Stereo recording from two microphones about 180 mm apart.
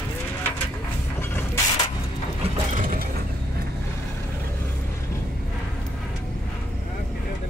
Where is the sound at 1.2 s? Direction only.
10° left (ahead or behind).